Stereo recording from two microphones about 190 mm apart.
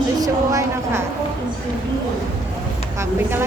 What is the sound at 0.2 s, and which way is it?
Speech, 15° right (ahead or behind).